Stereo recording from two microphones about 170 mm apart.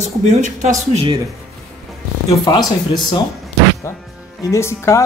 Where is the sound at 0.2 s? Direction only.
45° right (ahead or behind).